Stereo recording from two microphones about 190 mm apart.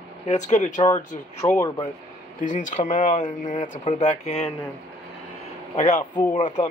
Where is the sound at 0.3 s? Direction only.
40° left (ahead or behind).